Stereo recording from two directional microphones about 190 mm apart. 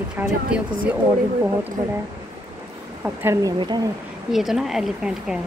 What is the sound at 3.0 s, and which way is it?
Speech, 15° right (ahead or behind).